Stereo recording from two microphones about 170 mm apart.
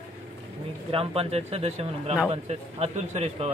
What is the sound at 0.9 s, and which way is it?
A man's voice, 35° right (ahead or behind).